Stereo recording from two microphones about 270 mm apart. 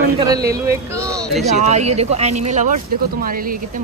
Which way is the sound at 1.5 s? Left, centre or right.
Right.